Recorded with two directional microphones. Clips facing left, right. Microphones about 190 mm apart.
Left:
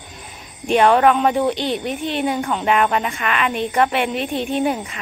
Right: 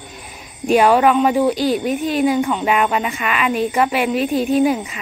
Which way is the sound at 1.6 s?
40° right (ahead or behind).